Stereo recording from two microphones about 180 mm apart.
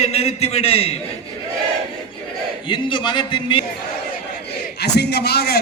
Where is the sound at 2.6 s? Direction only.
25° left (ahead or behind).